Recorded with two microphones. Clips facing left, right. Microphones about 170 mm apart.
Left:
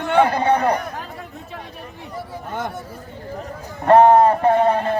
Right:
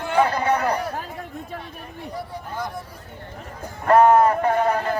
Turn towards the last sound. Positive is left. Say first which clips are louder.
# left 4 dB
turn(degrees=25)  # may be behind; listen again after turning